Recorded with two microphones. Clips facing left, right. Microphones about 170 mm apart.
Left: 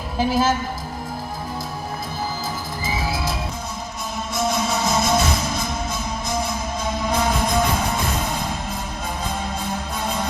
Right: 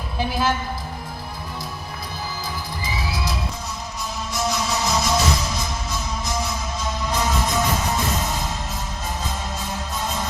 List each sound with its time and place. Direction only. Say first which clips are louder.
0.2 s a woman's voice: left 4 dB; 40° left (ahead or behind)
2.8 s music: left 4 dB; 50° left (ahead or behind)
4.4 s music: left 2 dB; 55° left (ahead or behind)
9.6 s music: left 2 dB; 60° left (ahead or behind)